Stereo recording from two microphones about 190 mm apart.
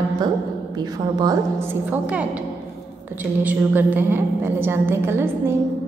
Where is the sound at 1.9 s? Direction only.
5° right (ahead or behind).